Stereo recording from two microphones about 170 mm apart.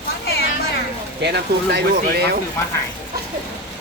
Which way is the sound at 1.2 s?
80° right.